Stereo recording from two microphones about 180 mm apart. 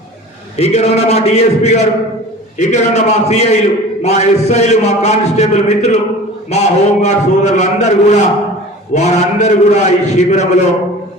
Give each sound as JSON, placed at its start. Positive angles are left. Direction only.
{"t": 0.5, "sound": "a man's voice", "side_deg": 35}